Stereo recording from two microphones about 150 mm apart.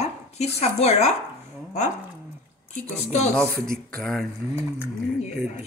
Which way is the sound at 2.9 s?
50° left (ahead or behind).